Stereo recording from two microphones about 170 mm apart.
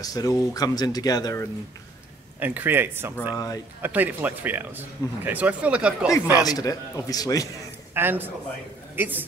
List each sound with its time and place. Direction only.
0.0 s speech: 20° left (ahead or behind)
2.4 s speech: 10° right (ahead or behind)
3.3 s speech: 20° left (ahead or behind)
3.8 s speech: 10° right (ahead or behind)
6.4 s speech: 20° left (ahead or behind)
7.9 s a man's voice: 10° right (ahead or behind)